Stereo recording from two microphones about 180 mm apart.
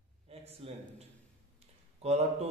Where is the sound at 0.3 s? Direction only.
35° right (ahead or behind).